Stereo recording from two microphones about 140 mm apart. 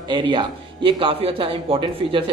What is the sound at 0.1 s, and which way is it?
A man's voice, 35° right (ahead or behind).